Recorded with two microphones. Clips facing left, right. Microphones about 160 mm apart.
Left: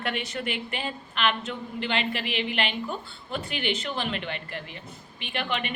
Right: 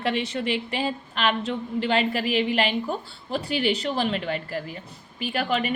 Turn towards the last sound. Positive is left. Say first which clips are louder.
# right 5 dB
turn(degrees=-40)  # may be behind; listen again after turning